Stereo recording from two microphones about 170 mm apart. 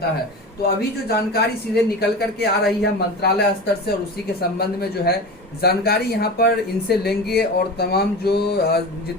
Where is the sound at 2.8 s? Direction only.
70° left (ahead or behind).